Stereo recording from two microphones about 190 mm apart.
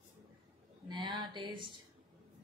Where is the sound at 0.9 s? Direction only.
25° right (ahead or behind).